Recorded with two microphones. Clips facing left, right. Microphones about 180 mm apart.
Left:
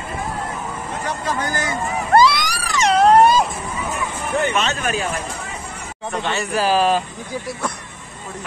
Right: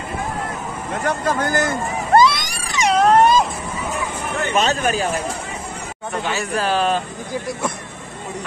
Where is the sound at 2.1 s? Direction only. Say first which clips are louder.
Even; 20° right (ahead or behind).